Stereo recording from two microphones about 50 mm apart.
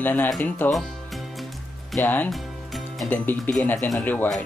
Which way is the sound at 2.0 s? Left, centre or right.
Left.